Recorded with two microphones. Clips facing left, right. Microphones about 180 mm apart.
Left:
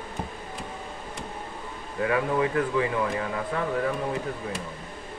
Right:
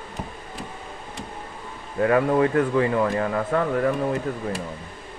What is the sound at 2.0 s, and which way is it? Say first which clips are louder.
Speech: right 6 dB; 45° right (ahead or behind).